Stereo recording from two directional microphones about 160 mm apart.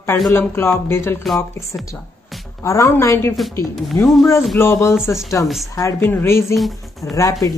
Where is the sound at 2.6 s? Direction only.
15° left (ahead or behind).